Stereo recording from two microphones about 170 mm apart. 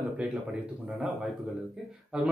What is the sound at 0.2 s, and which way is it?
A man's voice, 5° right (ahead or behind).